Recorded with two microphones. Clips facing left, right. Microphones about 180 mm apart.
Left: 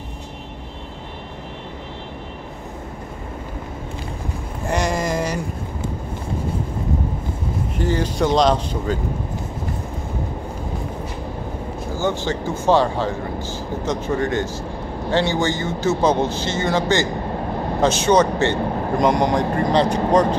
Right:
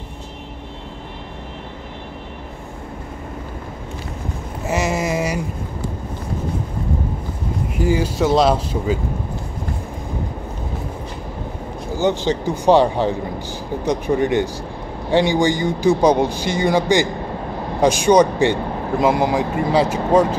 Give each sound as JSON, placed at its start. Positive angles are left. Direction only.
{"t": 4.6, "sound": "a sound", "side_deg": -5}
{"t": 7.7, "sound": "a man's voice", "side_deg": -10}
{"t": 12.0, "sound": "a man's voice", "side_deg": -20}